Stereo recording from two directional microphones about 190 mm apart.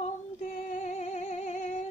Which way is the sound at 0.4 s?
40° left (ahead or behind).